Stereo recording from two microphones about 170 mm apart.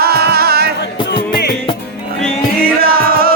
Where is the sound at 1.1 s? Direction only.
70° left (ahead or behind).